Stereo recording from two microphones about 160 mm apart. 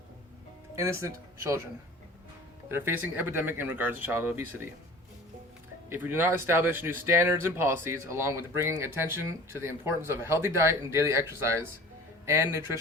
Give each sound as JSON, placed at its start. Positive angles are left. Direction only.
{"t": 0.8, "sound": "speech", "side_deg": -20}
{"t": 2.6, "sound": "speech", "side_deg": -15}
{"t": 5.9, "sound": "speech", "side_deg": -15}